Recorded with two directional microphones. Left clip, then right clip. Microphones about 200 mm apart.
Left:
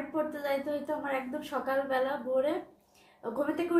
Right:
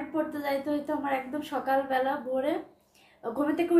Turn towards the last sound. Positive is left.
turn(degrees=-15)  # may be behind; listen again after turning